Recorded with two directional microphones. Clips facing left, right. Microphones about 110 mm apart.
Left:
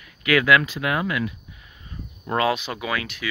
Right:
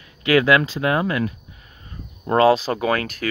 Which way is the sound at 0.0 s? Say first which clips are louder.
Right 4 dB; 30° right (ahead or behind).